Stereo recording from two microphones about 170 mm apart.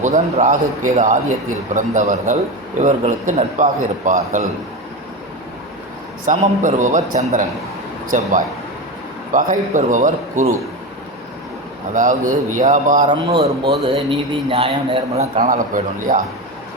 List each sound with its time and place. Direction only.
0.0 s a man's voice: 45° right (ahead or behind)
6.2 s a man's voice: 45° right (ahead or behind)
9.3 s a man's voice: 50° right (ahead or behind)
11.9 s a man's voice: 50° right (ahead or behind)
13.1 s a man's voice: 30° right (ahead or behind)
15.4 s a man's voice: 50° right (ahead or behind)